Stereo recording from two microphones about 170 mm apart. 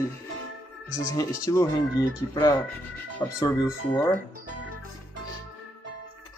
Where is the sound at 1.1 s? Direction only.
20° left (ahead or behind).